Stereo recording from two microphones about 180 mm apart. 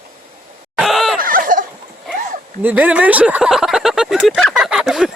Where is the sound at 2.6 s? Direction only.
10° right (ahead or behind).